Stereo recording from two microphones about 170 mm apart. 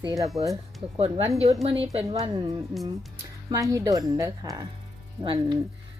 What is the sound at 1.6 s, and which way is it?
Speech, 35° right (ahead or behind).